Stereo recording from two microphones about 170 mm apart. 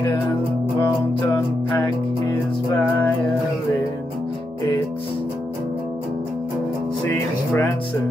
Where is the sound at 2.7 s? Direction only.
10° left (ahead or behind).